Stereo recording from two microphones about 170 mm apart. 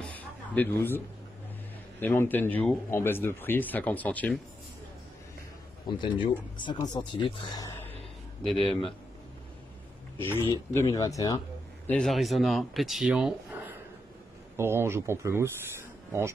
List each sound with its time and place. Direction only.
0.0 s a sound: 10° left (ahead or behind)
2.0 s speech: 10° left (ahead or behind)
5.9 s speech: 30° left (ahead or behind)
8.5 s speech: centre (ahead or behind)
10.1 s speech: 15° left (ahead or behind)
11.9 s speech: 5° left (ahead or behind); by 16.3 s 15° right (ahead or behind)